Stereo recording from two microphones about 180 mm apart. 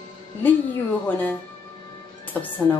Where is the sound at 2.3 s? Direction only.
10° left (ahead or behind).